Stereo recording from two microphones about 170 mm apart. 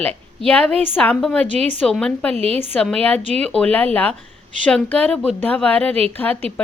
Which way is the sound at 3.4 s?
5° left (ahead or behind).